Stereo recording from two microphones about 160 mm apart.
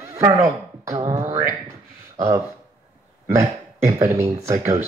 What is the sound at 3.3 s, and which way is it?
Speech, 20° right (ahead or behind).